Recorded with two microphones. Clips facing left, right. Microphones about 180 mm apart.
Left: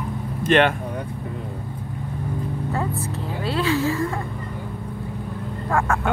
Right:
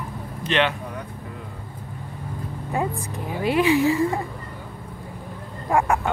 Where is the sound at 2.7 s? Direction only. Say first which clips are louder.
Right 4 dB; 15° right (ahead or behind).